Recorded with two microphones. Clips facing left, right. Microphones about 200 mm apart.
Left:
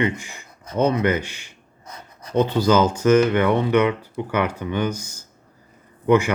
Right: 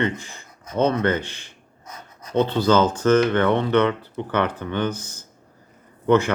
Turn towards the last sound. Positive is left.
turn(degrees=10)  # may be behind; listen again after turning